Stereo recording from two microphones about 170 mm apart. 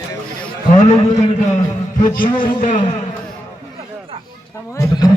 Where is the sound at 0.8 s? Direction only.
40° left (ahead or behind).